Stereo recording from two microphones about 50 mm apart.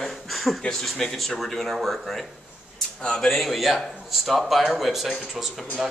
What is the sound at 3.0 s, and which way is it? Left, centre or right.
Speech, centre.